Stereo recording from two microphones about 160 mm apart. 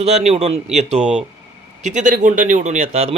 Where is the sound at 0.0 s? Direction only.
40° right (ahead or behind).